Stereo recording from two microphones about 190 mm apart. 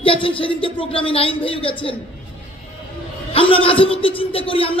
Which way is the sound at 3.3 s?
30° left (ahead or behind).